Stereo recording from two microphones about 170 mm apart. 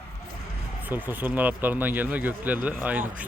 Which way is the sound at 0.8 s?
10° right (ahead or behind).